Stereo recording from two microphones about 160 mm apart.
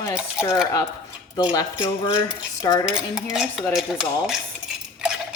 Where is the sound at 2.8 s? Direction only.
5° right (ahead or behind).